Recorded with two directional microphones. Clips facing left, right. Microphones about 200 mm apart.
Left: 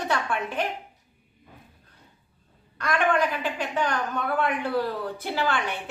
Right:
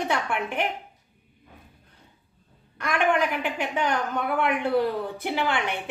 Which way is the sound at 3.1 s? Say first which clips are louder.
Right 2 dB; 20° right (ahead or behind).